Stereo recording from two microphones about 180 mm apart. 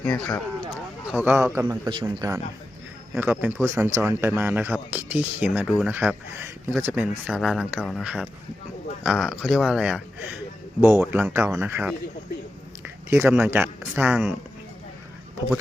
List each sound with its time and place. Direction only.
0.0 s a man's voice: 5° left (ahead or behind); by 1.6 s 15° right (ahead or behind)
1.9 s speech: 25° right (ahead or behind); by 11.9 s 10° right (ahead or behind)
13.1 s speech: 10° right (ahead or behind)